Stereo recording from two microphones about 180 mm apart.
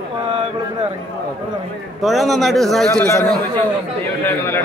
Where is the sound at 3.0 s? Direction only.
15° left (ahead or behind).